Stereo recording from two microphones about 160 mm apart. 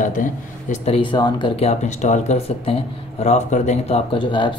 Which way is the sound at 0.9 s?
30° left (ahead or behind).